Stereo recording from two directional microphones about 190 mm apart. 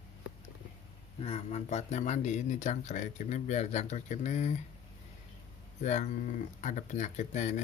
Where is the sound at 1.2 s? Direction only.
35° left (ahead or behind).